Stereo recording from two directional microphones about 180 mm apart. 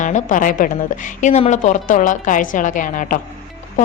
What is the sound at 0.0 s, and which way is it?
A woman's voice, 45° left (ahead or behind).